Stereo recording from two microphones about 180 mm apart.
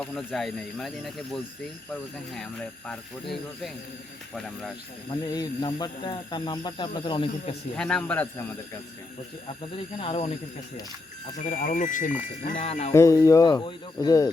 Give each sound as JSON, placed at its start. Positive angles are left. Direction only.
{"t": 0.0, "sound": "speech", "side_deg": 5}
{"t": 5.3, "sound": "speech", "side_deg": 25}
{"t": 7.8, "sound": "a man's voice", "side_deg": 5}
{"t": 9.7, "sound": "speech", "side_deg": 35}
{"t": 11.3, "sound": "speech", "side_deg": 45}
{"t": 12.5, "sound": "speech", "side_deg": 35}
{"t": 12.9, "sound": "speech", "side_deg": 15}